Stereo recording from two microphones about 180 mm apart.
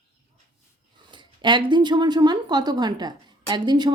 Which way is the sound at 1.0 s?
25° right (ahead or behind).